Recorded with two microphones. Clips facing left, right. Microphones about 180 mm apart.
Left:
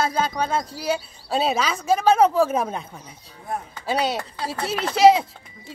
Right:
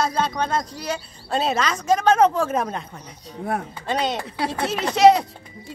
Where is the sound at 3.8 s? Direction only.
5° left (ahead or behind).